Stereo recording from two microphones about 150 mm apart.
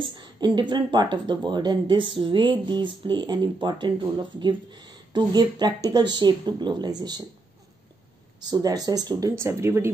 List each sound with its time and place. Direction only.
0.0 s speech: 30° right (ahead or behind)
8.5 s speech: 25° right (ahead or behind)